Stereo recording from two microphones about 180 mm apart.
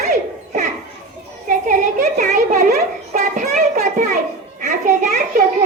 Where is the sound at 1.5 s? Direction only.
50° right (ahead or behind).